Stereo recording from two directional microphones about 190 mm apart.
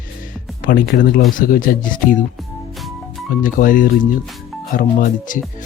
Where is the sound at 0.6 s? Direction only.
50° left (ahead or behind).